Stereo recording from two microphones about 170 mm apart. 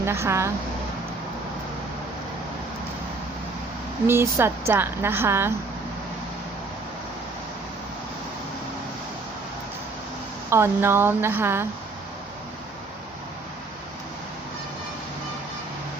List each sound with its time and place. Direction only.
0.0 s a woman's voice: 15° right (ahead or behind)
4.0 s a woman's voice: 15° right (ahead or behind)
10.5 s a woman's voice: 15° right (ahead or behind)